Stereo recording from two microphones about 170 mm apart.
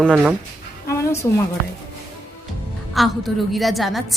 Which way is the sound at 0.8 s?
15° left (ahead or behind).